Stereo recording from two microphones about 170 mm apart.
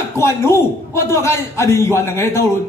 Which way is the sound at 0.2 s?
15° left (ahead or behind).